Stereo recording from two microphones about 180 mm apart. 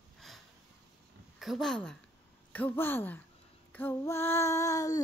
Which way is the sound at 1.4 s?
Centre (ahead or behind).